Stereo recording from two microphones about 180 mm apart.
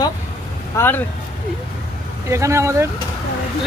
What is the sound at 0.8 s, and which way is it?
Speech, 10° left (ahead or behind).